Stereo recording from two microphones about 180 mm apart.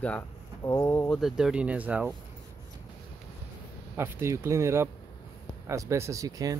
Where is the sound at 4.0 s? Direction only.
15° right (ahead or behind).